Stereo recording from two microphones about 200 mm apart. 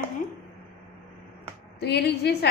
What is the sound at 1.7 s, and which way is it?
Speech, 55° left (ahead or behind).